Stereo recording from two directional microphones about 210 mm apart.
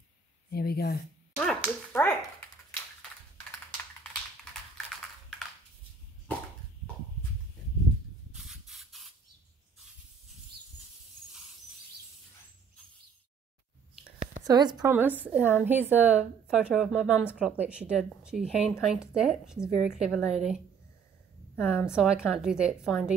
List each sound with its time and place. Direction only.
0.5 s speech: 50° left (ahead or behind)
1.4 s a sound: 5° left (ahead or behind)
8.3 s spray: centre (ahead or behind)
14.4 s a woman's voice: 20° right (ahead or behind); by 20.5 s centre (ahead or behind)
21.6 s a woman's voice: 5° right (ahead or behind)